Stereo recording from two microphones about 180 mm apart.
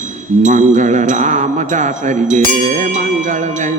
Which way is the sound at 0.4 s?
40° right (ahead or behind).